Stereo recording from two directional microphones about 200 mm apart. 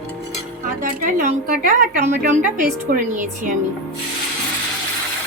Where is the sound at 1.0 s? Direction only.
45° right (ahead or behind).